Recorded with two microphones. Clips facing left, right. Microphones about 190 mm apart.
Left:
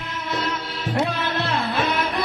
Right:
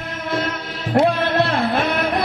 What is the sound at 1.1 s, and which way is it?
Music, 65° right (ahead or behind).